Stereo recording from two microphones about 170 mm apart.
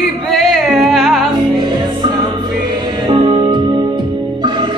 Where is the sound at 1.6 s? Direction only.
30° right (ahead or behind).